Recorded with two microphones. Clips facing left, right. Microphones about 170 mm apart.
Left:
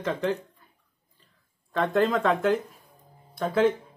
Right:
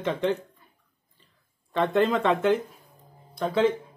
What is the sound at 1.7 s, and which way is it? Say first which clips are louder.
Speech: right 1 dB; centre (ahead or behind).